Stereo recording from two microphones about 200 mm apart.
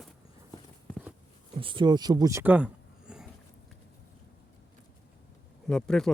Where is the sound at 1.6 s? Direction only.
25° right (ahead or behind); by 3.2 s 5° right (ahead or behind).